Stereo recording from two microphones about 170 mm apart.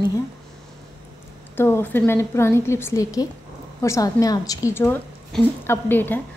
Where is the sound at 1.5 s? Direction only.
15° left (ahead or behind).